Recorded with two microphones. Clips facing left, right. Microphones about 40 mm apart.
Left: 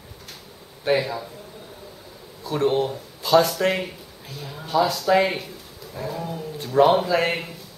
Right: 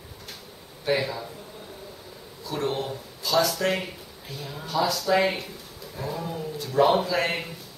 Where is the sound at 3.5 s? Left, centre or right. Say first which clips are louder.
Left 3 dB; centre.